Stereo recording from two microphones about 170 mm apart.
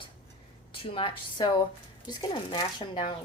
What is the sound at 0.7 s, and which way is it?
A woman's voice, 30° left (ahead or behind).